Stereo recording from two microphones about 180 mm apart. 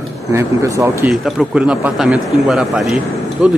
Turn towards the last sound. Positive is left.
turn(degrees=0)  # may be behind; listen again after turning